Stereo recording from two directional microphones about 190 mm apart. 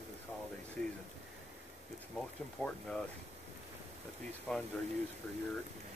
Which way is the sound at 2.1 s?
5° left (ahead or behind).